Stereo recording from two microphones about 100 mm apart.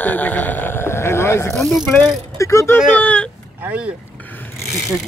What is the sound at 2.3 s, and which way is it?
Speech, 30° left (ahead or behind).